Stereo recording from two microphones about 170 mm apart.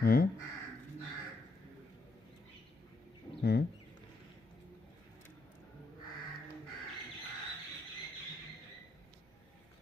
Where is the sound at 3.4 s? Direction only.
70° left (ahead or behind).